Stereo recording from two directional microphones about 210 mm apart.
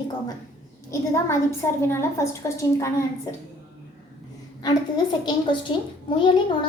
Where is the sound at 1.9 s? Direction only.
15° left (ahead or behind).